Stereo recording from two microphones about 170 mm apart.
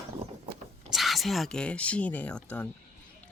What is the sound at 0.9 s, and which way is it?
Speech, centre (ahead or behind).